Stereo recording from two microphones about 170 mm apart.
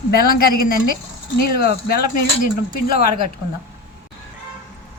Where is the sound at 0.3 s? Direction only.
60° left (ahead or behind).